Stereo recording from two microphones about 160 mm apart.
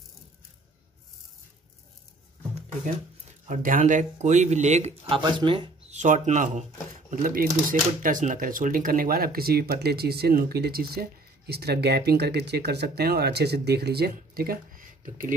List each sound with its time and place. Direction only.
3.4 s speech: 55° right (ahead or behind)
5.2 s speech: 30° right (ahead or behind)
5.9 s speech: 50° right (ahead or behind)